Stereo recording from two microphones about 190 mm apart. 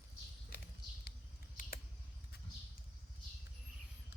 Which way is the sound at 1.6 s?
45° left (ahead or behind).